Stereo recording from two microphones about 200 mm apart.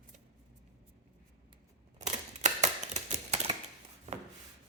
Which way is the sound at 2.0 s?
35° right (ahead or behind).